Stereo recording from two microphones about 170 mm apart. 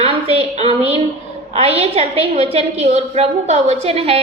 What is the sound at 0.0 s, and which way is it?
A woman's voice, 35° right (ahead or behind).